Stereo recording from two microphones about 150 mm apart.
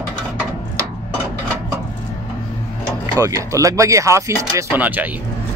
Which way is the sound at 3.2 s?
20° right (ahead or behind).